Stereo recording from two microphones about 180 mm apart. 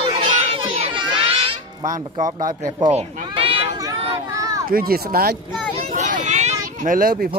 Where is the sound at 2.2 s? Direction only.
20° right (ahead or behind).